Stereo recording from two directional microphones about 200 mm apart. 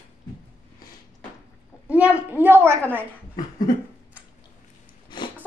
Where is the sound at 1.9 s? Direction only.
5° right (ahead or behind).